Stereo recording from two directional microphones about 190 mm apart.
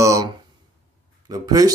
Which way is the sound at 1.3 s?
20° right (ahead or behind).